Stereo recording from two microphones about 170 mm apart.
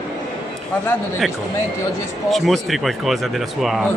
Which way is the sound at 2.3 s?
Centre (ahead or behind).